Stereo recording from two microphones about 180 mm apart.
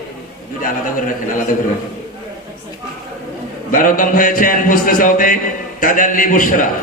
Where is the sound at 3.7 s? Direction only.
50° left (ahead or behind).